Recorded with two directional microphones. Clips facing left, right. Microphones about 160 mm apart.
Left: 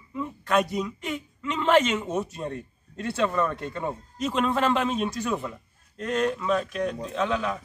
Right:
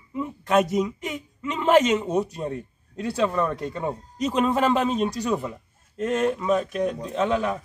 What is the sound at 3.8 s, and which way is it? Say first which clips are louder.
Speech: right 2 dB; centre (ahead or behind).